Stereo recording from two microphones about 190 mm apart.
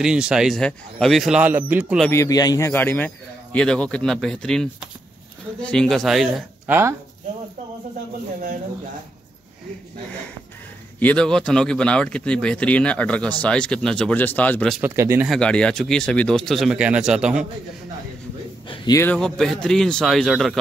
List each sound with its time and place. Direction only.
0.0 s speech: 5° right (ahead or behind)
2.0 s speech: 15° left (ahead or behind)
11.0 s speech: 5° left (ahead or behind)
14.8 s speech: 15° right (ahead or behind)
15.2 s speech: 5° left (ahead or behind)
18.7 s a man's voice: 20° left (ahead or behind)
19.0 s speech: 5° left (ahead or behind)